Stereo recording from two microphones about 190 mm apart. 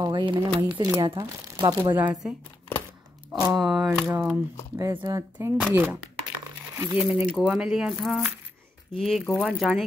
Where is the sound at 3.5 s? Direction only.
Centre (ahead or behind).